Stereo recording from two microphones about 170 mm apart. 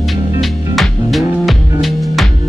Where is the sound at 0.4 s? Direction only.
Centre (ahead or behind).